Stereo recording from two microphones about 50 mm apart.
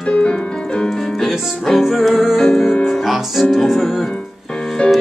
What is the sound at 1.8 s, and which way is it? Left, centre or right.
Music, centre.